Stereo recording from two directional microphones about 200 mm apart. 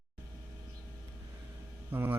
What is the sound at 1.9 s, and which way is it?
Speech, 10° right (ahead or behind).